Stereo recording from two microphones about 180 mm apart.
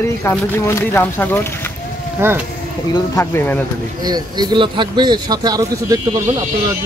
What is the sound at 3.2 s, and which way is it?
Speech, 10° left (ahead or behind).